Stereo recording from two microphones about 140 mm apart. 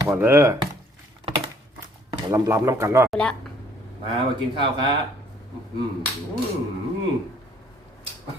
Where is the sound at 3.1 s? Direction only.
5° left (ahead or behind).